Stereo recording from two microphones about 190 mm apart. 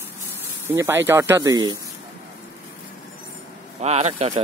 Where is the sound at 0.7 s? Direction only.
15° right (ahead or behind).